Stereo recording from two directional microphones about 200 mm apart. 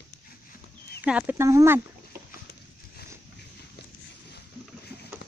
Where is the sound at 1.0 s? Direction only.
5° right (ahead or behind).